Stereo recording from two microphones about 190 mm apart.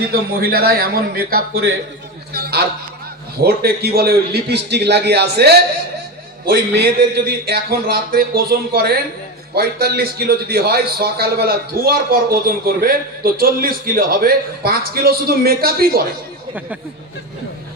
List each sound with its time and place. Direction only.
0.1 s a man's voice: 50° right (ahead or behind)